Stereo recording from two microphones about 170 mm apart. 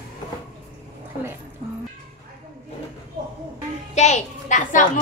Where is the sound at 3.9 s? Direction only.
45° left (ahead or behind).